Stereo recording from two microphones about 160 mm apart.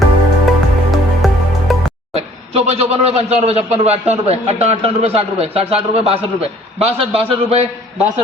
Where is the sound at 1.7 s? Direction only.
Centre (ahead or behind).